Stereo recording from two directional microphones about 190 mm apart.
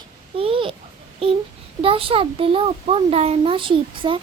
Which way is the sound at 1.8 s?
30° right (ahead or behind).